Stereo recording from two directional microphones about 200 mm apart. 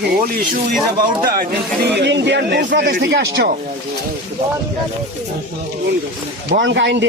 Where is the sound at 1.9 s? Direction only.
60° right (ahead or behind).